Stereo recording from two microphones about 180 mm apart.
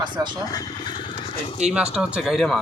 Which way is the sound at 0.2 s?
20° right (ahead or behind).